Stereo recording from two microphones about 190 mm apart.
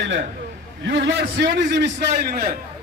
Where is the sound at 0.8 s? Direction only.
70° right (ahead or behind).